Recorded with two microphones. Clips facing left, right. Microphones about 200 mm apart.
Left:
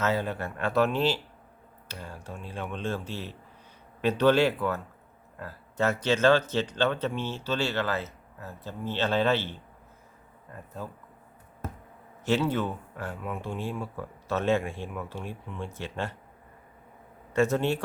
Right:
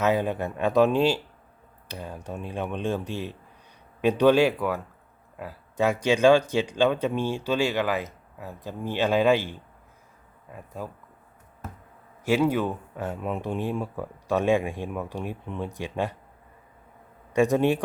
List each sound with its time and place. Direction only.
0.0 s speech: 15° right (ahead or behind)
12.2 s speech: 10° right (ahead or behind)
17.3 s speech: 15° right (ahead or behind)